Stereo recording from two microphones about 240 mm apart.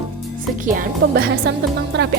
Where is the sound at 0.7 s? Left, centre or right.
Right.